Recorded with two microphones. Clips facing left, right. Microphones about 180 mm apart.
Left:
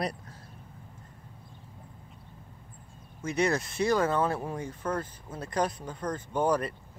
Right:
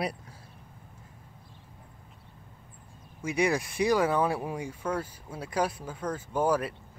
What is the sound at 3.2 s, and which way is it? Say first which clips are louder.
Speech: even; 10° right (ahead or behind).